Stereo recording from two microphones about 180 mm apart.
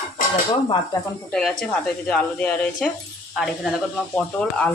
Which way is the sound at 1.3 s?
Centre (ahead or behind).